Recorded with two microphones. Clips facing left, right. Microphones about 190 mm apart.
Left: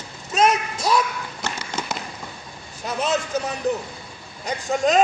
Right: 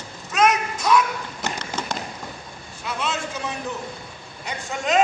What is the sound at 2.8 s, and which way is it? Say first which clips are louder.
Speech: left 4 dB; 40° left (ahead or behind).